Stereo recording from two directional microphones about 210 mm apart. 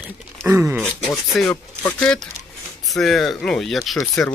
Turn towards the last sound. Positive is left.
turn(degrees=5)  # may be behind; listen again after turning